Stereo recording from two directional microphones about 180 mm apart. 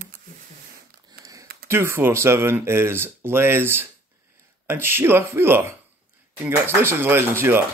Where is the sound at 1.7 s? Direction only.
10° right (ahead or behind).